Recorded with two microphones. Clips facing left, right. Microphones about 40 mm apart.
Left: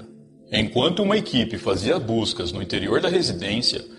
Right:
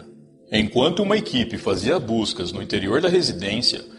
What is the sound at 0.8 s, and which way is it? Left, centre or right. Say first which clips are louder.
A man's voice: right 1 dB; centre.